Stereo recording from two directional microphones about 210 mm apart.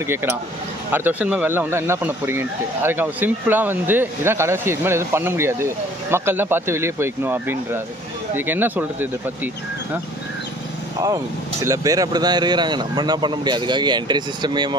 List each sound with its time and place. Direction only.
0.0 s speech: 10° right (ahead or behind)
11.0 s speech: 15° right (ahead or behind)